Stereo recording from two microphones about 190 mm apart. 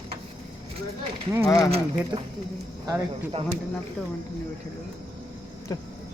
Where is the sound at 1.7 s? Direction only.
30° right (ahead or behind).